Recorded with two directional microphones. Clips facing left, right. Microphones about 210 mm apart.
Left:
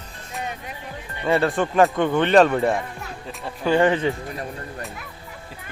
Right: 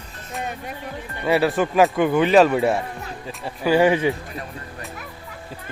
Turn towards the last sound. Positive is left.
turn(degrees=-10)  # may be behind; listen again after turning